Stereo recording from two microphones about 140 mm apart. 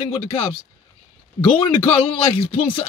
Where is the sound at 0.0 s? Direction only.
35° left (ahead or behind).